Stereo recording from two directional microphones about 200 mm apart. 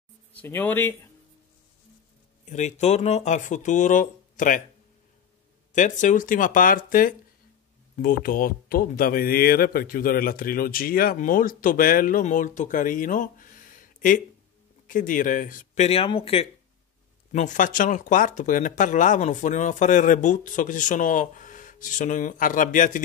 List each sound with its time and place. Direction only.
0.3 s speech: 10° left (ahead or behind)
2.4 s speech: 35° left (ahead or behind)
5.7 s speech: 40° left (ahead or behind)